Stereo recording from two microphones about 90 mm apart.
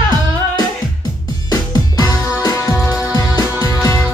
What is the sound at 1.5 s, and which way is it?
Music, 45° left (ahead or behind).